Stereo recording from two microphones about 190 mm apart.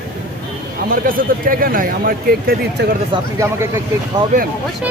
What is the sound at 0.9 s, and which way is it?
Speech, 50° right (ahead or behind).